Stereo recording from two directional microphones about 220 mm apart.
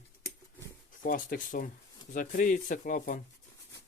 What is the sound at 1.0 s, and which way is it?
Speech, 35° left (ahead or behind).